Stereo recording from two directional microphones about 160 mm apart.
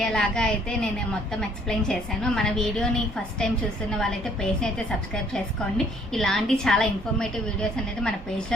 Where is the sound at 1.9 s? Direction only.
5° left (ahead or behind).